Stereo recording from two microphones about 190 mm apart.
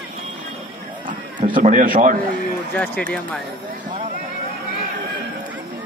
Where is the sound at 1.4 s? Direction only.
45° right (ahead or behind).